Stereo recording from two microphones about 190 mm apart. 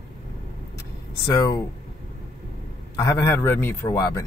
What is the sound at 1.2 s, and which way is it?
Speech, 20° left (ahead or behind).